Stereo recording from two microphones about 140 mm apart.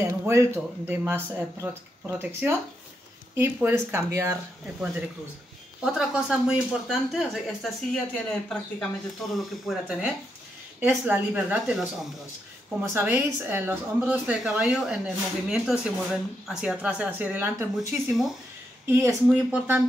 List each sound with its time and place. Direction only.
0.2 s speech: 15° right (ahead or behind)
5.9 s speech: 5° right (ahead or behind)
10.8 s speech: 10° right (ahead or behind)
17.7 s speech: centre (ahead or behind)
18.9 s speech: 20° right (ahead or behind)